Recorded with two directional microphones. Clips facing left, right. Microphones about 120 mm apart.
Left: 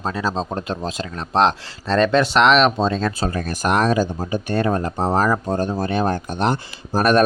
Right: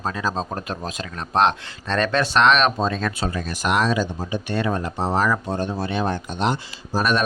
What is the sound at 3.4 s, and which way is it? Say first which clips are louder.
Speech: left 2 dB; 45° left (ahead or behind).